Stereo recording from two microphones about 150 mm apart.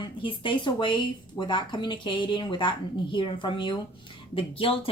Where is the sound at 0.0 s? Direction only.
35° left (ahead or behind).